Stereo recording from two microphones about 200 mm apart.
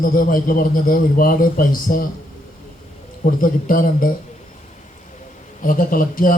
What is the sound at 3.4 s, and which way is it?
Speech, 45° left (ahead or behind).